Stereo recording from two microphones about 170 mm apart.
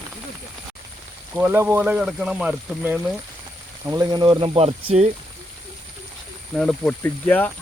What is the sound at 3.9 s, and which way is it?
Speech, 25° right (ahead or behind).